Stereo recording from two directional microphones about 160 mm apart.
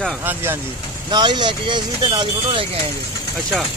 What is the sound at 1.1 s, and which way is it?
Speech, 30° right (ahead or behind).